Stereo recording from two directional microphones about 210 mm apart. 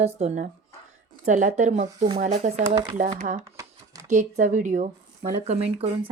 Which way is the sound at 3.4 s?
15° right (ahead or behind).